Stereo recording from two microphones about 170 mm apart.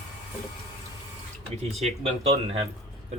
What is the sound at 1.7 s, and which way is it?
Speech, 35° right (ahead or behind).